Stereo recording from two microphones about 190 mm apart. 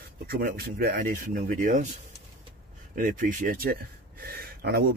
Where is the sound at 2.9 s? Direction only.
45° right (ahead or behind).